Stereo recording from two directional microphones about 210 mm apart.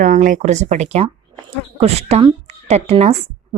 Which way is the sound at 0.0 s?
40° right (ahead or behind).